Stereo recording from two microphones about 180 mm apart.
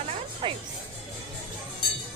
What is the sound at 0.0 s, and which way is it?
Music, 35° right (ahead or behind).